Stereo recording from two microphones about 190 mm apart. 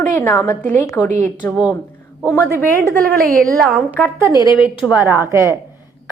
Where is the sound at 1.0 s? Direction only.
5° right (ahead or behind).